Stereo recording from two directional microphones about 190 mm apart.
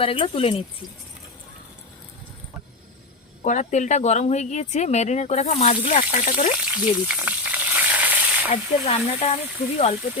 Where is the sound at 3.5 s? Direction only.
40° left (ahead or behind).